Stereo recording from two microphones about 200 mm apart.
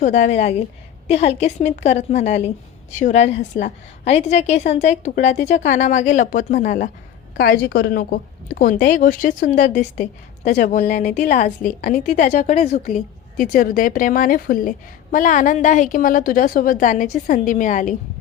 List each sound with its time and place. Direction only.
0.0 s a woman's voice: 35° left (ahead or behind)
7.3 s a woman's voice: 50° left (ahead or behind)